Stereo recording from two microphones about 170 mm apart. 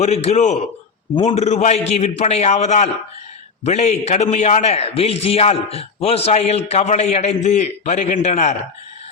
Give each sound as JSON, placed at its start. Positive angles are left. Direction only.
{"t": 0.0, "sound": "a man's voice", "side_deg": 40}